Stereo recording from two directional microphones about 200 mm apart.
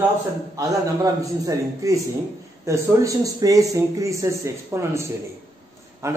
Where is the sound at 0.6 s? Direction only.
15° right (ahead or behind).